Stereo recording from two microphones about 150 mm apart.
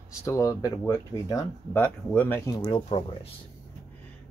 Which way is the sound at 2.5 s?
25° left (ahead or behind).